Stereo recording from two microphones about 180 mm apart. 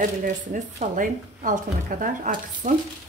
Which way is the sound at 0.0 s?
45° right (ahead or behind).